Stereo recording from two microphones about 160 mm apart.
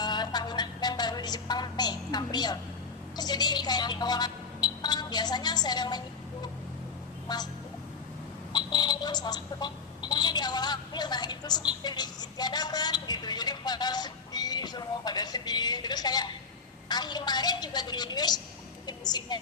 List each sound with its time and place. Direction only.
0.0 s music: 25° left (ahead or behind)
3.2 s a sound: 25° left (ahead or behind)
7.3 s a woman's voice: 25° left (ahead or behind)
8.5 s telephone: 25° left (ahead or behind)
16.9 s a woman's voice: 25° left (ahead or behind)